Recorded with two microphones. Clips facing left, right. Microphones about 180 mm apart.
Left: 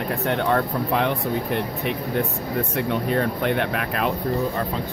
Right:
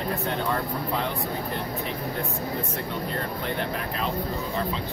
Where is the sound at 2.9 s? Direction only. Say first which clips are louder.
Left 10 dB; 65° left (ahead or behind).